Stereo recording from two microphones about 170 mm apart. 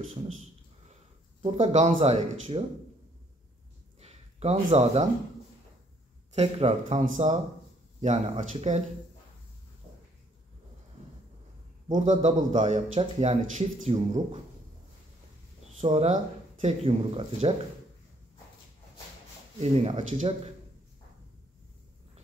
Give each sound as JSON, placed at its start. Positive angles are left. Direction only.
{"t": 1.4, "sound": "speech", "side_deg": -40}
{"t": 4.0, "sound": "a sound", "side_deg": -40}
{"t": 6.3, "sound": "speech", "side_deg": -40}
{"t": 11.9, "sound": "speech", "side_deg": -40}
{"t": 15.8, "sound": "speech", "side_deg": -40}
{"t": 19.6, "sound": "speech", "side_deg": -40}